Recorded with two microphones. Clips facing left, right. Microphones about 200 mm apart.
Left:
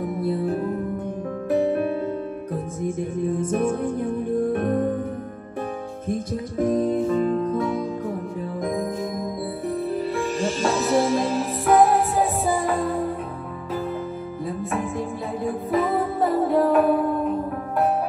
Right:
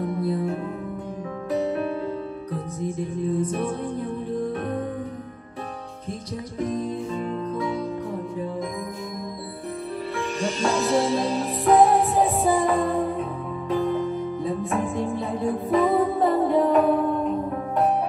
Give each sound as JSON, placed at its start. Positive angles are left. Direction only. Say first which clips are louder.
{"t": 0.0, "sound": "music", "louder": "even", "side_deg": 0}
{"t": 0.3, "sound": "music", "louder": "left 2 dB", "side_deg": 35}
{"t": 1.5, "sound": "music", "louder": "left 4 dB", "side_deg": 55}
{"t": 3.3, "sound": "music", "louder": "left 3 dB", "side_deg": 50}
{"t": 6.6, "sound": "music", "louder": "left 6 dB", "side_deg": 55}
{"t": 10.4, "sound": "music", "louder": "right 1 dB", "side_deg": 5}